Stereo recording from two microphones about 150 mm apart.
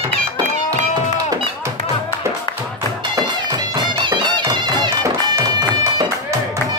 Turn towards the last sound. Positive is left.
turn(degrees=-20)  # may be behind; listen again after turning